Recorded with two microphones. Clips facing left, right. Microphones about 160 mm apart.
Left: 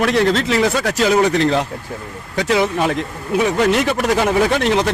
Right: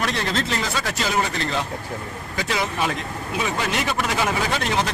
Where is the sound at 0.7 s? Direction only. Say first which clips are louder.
Left 7 dB; 55° left (ahead or behind).